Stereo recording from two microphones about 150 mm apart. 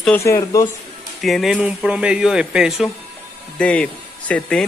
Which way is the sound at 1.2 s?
Centre (ahead or behind).